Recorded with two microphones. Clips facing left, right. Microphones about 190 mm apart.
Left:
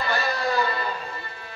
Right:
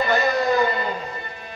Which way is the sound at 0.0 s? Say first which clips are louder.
Right 6 dB; 20° right (ahead or behind).